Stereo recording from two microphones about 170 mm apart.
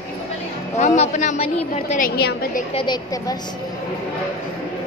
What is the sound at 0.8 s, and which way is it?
A woman's voice, 45° left (ahead or behind).